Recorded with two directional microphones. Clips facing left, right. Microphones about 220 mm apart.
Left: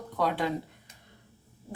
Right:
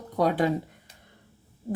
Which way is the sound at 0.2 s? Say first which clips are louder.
Right 5 dB; 45° right (ahead or behind).